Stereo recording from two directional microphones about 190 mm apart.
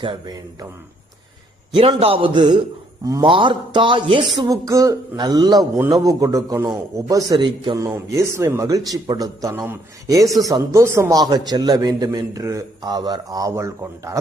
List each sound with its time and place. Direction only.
0.0 s a man's voice: 25° right (ahead or behind)
1.7 s a man's voice: 30° right (ahead or behind)